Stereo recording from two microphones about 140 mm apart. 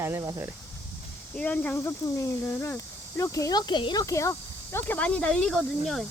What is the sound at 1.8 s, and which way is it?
Speech, 20° left (ahead or behind).